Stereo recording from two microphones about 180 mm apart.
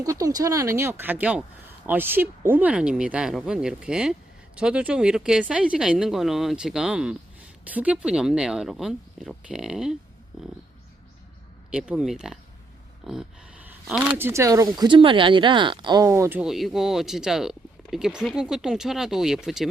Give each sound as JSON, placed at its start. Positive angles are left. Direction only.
{"t": 0.0, "sound": "speech", "side_deg": -20}
{"t": 11.7, "sound": "speech", "side_deg": -5}
{"t": 13.7, "sound": "a sound", "side_deg": -5}
{"t": 14.2, "sound": "speech", "side_deg": -15}
{"t": 16.4, "sound": "speech", "side_deg": 0}